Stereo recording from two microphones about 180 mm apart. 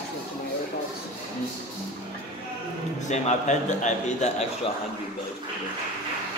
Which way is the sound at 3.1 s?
40° left (ahead or behind).